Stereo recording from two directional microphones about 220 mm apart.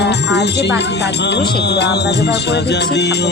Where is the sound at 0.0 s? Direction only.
50° left (ahead or behind).